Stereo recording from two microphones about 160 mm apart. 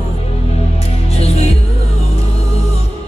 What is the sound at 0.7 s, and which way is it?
Music, 40° left (ahead or behind).